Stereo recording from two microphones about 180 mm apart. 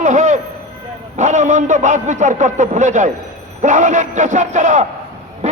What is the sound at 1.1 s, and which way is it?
A man's voice, 40° right (ahead or behind).